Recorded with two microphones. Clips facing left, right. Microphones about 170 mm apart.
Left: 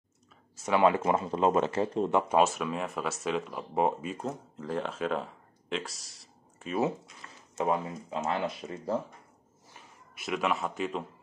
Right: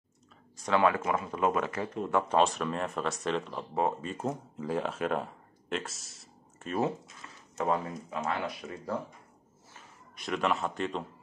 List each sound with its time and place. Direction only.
0.7 s speech: 15° left (ahead or behind)
2.2 s speech: 10° left (ahead or behind)
3.7 s speech: 15° left (ahead or behind)
4.1 s speech: 5° right (ahead or behind)
7.5 s speech: 20° left (ahead or behind)
9.8 s a man's voice: 5° left (ahead or behind)